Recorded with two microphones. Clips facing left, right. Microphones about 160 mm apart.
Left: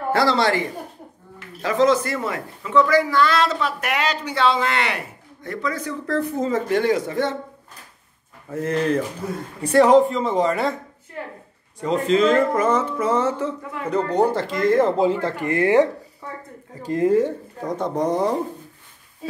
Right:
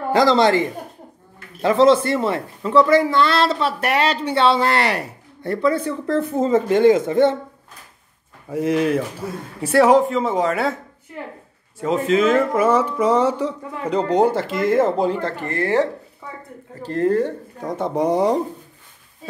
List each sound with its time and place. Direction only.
0.1 s speech: 20° right (ahead or behind)
8.5 s speech: 10° right (ahead or behind)
11.8 s speech: 5° right (ahead or behind)
15.4 s speech: 15° left (ahead or behind)
17.9 s speech: 10° right (ahead or behind)